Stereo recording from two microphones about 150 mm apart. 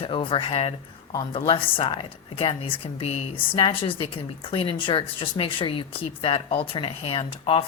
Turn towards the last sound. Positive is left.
turn(degrees=40)  # may be behind; listen again after turning